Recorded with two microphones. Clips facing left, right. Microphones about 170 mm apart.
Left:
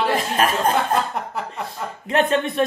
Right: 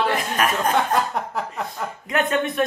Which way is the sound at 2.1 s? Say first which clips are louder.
Left 3 dB; 30° left (ahead or behind).